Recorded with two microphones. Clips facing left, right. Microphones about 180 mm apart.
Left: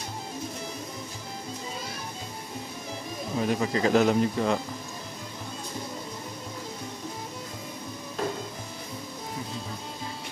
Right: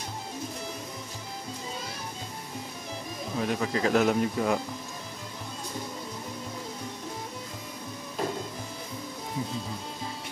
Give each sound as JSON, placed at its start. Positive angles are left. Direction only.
{"t": 3.3, "sound": "speech", "side_deg": 0}